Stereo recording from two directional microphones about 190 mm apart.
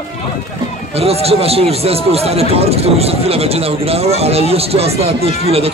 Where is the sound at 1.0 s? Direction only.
30° right (ahead or behind).